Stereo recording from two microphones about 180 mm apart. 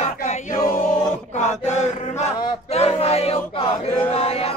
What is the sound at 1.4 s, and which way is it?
Chant, 40° left (ahead or behind).